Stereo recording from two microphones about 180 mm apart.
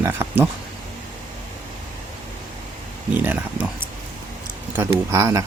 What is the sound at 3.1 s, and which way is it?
Speech, 10° right (ahead or behind).